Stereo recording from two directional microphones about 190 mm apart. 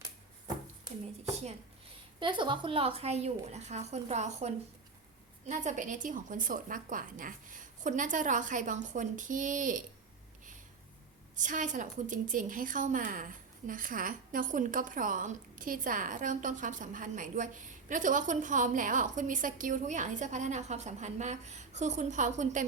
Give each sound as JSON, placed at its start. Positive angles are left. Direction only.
{"t": 1.2, "sound": "speech", "side_deg": -35}
{"t": 2.1, "sound": "a woman's voice", "side_deg": -25}
{"t": 11.3, "sound": "a woman's voice", "side_deg": -40}